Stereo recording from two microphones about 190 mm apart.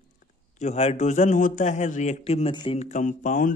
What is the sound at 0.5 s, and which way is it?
A man's voice, 35° left (ahead or behind).